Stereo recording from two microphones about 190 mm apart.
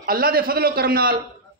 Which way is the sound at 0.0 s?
50° right (ahead or behind).